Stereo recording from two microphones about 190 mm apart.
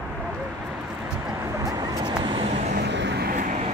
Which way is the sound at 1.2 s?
15° right (ahead or behind).